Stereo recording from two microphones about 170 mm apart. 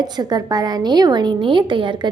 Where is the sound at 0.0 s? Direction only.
25° right (ahead or behind).